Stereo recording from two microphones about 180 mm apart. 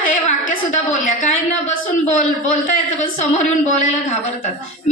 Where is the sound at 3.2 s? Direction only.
40° left (ahead or behind).